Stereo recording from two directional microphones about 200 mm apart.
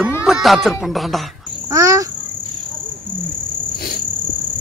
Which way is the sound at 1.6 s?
15° right (ahead or behind).